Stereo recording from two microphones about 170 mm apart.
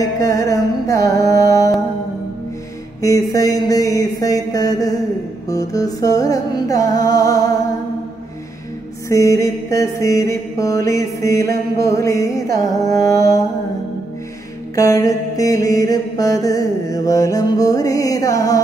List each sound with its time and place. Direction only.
0.2 s music: 20° left (ahead or behind)
3.0 s a sound: 20° left (ahead or behind)
5.5 s mantra: 20° left (ahead or behind)
9.1 s mantra: 20° left (ahead or behind)
14.8 s mantra: 20° left (ahead or behind)